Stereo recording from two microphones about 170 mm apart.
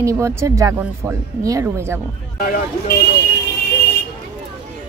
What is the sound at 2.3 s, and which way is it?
Speech, 60° left (ahead or behind).